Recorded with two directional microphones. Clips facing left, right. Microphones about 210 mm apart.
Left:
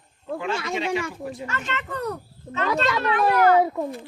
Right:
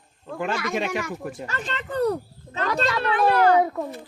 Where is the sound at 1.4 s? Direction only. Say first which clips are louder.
Left 1 dB; 35° right (ahead or behind).